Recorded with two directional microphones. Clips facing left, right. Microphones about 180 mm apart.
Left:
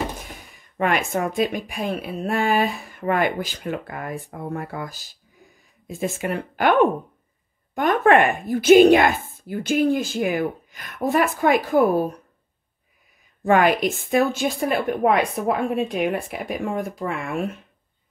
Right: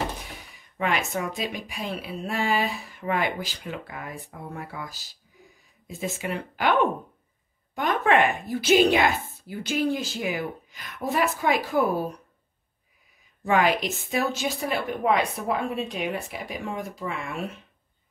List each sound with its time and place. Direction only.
0.4 s speech: 50° left (ahead or behind)
7.7 s speech: 50° left (ahead or behind)
13.4 s speech: 50° left (ahead or behind)